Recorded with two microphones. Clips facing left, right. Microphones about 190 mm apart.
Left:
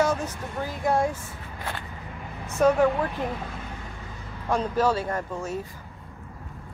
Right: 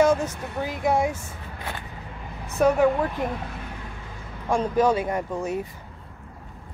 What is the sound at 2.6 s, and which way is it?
Speech, 5° right (ahead or behind).